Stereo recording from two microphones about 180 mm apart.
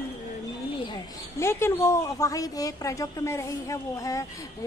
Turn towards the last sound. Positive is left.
turn(degrees=15)  # may be behind; listen again after turning